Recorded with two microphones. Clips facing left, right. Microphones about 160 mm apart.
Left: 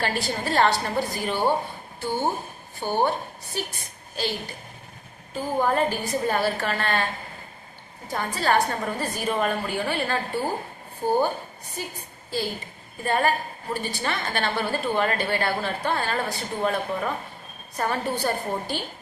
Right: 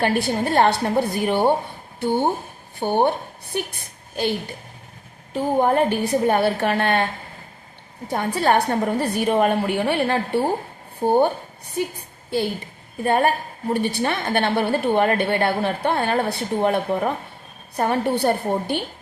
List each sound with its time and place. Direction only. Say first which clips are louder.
0.0 s a woman's voice: right 6 dB; 55° right (ahead or behind)
5.3 s a woman's voice: right 5 dB; 65° right (ahead or behind)
12.3 s a woman's voice: right 6 dB; 60° right (ahead or behind)